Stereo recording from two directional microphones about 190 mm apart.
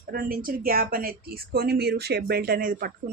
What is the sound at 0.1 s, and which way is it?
Speech, 50° right (ahead or behind).